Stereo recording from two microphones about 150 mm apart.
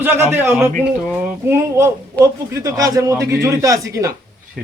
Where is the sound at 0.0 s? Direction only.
15° right (ahead or behind).